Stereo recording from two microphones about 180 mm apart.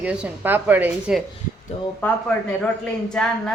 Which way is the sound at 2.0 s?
10° left (ahead or behind).